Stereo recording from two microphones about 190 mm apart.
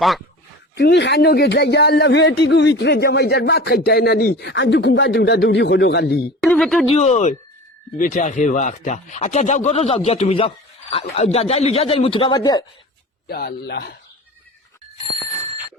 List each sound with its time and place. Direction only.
0.8 s speech: 65° left (ahead or behind)
6.4 s speech: centre (ahead or behind)
6.8 s speech: 35° left (ahead or behind)
13.2 s speech: 55° left (ahead or behind)